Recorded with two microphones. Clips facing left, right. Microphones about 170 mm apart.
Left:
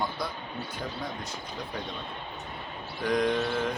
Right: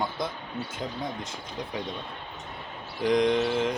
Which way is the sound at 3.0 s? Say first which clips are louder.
Right 4 dB; 20° right (ahead or behind).